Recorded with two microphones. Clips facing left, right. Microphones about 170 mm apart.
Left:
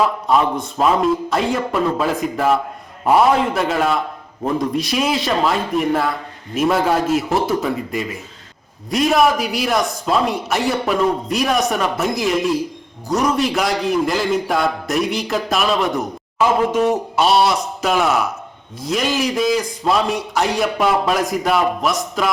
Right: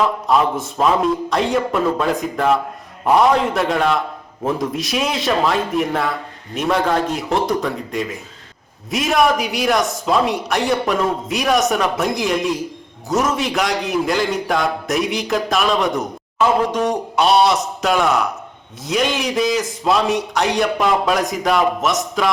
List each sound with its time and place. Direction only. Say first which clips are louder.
0.3 s a man's voice: even; centre (ahead or behind)